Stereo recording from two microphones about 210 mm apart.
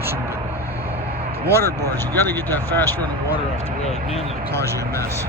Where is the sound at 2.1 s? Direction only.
10° left (ahead or behind).